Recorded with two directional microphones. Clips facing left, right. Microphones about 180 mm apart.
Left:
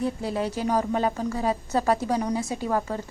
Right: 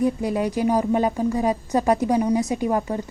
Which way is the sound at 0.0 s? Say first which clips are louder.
Right 5 dB; 15° right (ahead or behind).